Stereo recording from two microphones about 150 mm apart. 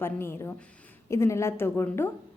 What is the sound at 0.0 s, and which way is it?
A woman's voice, 15° left (ahead or behind).